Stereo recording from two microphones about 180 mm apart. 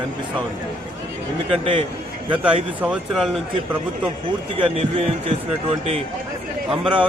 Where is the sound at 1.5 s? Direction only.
30° right (ahead or behind).